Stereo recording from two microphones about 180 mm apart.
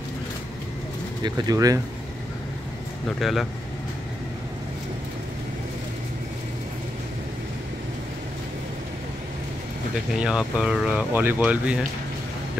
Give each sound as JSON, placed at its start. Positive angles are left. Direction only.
{"t": 1.2, "sound": "speech", "side_deg": -20}
{"t": 3.2, "sound": "speech", "side_deg": 0}
{"t": 10.2, "sound": "speech", "side_deg": -5}